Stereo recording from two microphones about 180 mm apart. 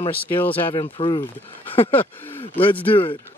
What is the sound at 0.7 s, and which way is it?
Speech, 25° left (ahead or behind).